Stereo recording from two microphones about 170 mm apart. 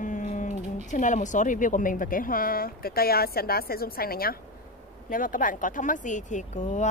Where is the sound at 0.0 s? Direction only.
50° left (ahead or behind).